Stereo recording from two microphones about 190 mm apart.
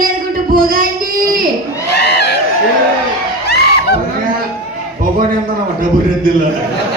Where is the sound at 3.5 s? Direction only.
60° left (ahead or behind).